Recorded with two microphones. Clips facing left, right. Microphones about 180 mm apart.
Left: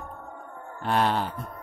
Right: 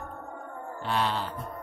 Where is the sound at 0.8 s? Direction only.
50° left (ahead or behind).